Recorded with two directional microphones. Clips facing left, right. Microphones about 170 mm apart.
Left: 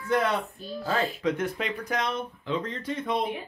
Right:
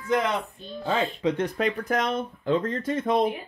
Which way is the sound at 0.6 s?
5° left (ahead or behind).